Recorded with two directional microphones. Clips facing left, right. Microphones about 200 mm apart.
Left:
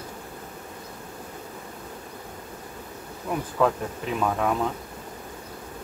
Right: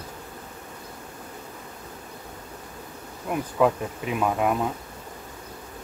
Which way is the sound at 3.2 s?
10° right (ahead or behind).